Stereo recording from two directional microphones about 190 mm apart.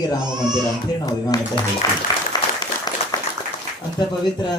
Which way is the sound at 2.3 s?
20° left (ahead or behind).